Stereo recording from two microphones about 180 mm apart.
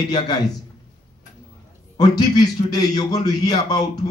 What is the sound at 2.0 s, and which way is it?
A man's voice, 20° left (ahead or behind).